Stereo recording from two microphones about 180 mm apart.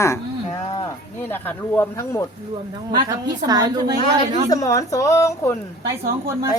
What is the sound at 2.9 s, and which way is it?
A woman's voice, 20° right (ahead or behind).